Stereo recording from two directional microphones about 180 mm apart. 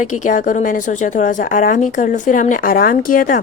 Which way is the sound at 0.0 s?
45° left (ahead or behind).